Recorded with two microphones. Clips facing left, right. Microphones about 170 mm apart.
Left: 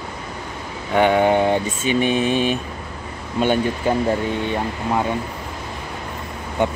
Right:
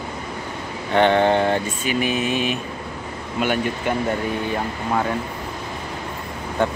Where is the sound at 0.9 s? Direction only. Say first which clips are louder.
Left 1 dB; 10° left (ahead or behind); by 4.1 s 30° left (ahead or behind).